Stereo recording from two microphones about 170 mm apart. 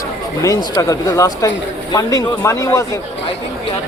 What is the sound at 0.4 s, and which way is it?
Speech, 20° left (ahead or behind).